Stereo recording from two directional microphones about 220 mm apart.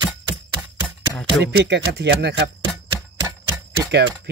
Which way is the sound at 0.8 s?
Centre (ahead or behind).